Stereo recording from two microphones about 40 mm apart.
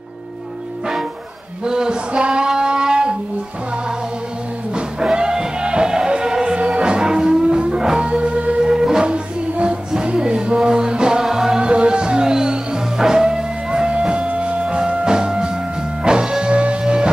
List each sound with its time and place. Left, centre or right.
1.6 s a sound: centre
4.7 s music: right
8.0 s music: right
8.6 s music: centre
9.1 s music: right
11.7 s music: right
13.9 s music: right